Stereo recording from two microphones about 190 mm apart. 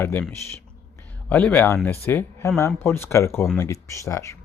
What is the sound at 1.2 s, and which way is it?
Speech, 10° left (ahead or behind).